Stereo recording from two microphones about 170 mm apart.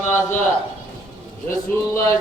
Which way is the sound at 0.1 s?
10° left (ahead or behind).